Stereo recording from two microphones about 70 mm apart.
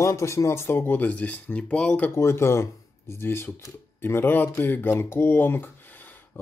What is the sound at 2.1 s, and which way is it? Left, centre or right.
Speech, left.